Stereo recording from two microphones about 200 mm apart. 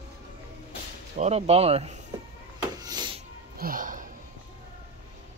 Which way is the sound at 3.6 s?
45° right (ahead or behind).